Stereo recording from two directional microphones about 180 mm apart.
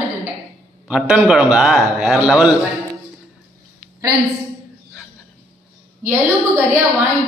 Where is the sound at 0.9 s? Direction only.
5° right (ahead or behind).